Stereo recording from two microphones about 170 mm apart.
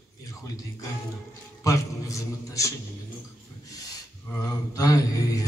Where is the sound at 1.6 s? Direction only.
20° left (ahead or behind).